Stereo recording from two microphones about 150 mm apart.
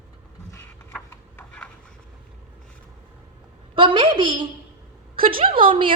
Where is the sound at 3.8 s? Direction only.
35° right (ahead or behind).